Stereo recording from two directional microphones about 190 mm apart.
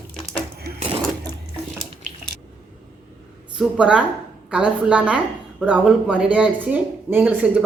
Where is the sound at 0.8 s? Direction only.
30° right (ahead or behind).